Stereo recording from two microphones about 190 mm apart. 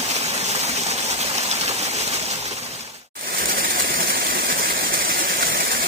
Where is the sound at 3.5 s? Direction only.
50° right (ahead or behind).